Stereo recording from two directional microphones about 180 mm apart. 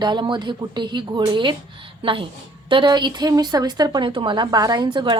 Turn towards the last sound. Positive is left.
turn(degrees=-25)  # may be behind; listen again after turning